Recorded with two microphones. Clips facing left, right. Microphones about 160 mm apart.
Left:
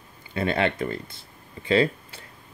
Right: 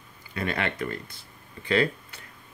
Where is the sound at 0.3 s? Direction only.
25° left (ahead or behind).